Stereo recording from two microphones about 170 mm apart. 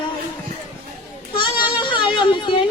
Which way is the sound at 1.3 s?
30° left (ahead or behind).